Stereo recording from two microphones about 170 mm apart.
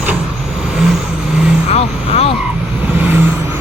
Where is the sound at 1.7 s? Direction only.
35° left (ahead or behind).